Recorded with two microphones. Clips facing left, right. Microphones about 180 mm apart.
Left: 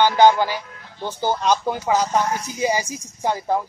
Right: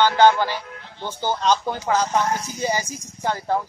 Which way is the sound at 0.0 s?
15° left (ahead or behind).